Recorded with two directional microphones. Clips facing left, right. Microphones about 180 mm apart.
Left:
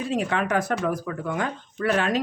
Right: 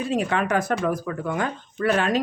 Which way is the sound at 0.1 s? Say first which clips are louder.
Right 1 dB; 45° right (ahead or behind).